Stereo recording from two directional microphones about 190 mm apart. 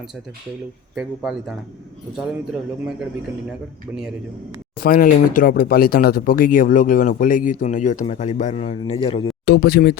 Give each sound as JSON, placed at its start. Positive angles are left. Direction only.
{"t": 0.9, "sound": "speech", "side_deg": 0}
{"t": 4.8, "sound": "speech", "side_deg": 50}
{"t": 9.5, "sound": "speech", "side_deg": 60}